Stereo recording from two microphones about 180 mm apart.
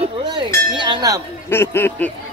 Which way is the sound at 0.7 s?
25° right (ahead or behind).